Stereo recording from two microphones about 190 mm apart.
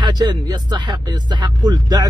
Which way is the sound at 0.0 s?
20° right (ahead or behind).